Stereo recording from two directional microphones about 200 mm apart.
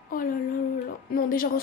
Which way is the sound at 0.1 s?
45° left (ahead or behind).